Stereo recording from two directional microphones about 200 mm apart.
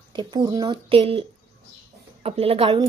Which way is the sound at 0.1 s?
20° right (ahead or behind).